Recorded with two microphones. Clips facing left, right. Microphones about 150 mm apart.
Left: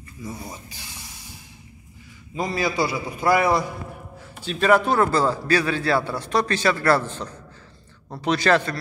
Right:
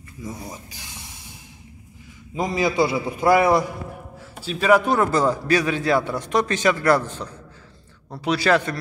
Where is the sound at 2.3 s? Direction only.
20° right (ahead or behind).